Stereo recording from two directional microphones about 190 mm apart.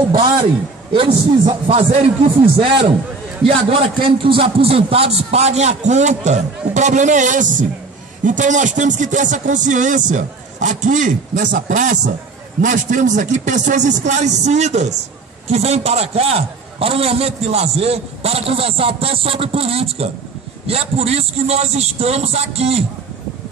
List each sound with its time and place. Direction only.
0.9 s a man's voice: 30° right (ahead or behind)